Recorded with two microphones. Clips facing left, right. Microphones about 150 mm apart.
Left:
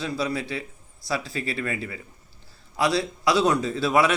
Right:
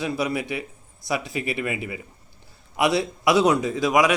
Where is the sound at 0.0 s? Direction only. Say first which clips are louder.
Right 2 dB; 20° right (ahead or behind).